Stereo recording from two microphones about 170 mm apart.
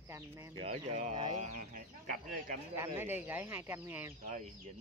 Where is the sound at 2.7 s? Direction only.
15° right (ahead or behind).